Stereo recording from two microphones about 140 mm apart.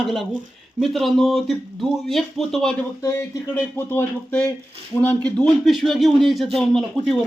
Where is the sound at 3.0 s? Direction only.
20° left (ahead or behind).